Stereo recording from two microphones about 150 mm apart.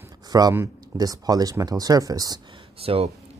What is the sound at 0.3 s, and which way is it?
Speech, 25° right (ahead or behind).